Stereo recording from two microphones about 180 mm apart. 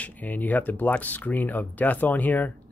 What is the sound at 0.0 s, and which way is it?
Speech, 10° left (ahead or behind).